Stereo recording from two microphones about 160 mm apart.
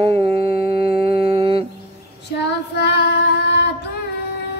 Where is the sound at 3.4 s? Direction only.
90° left.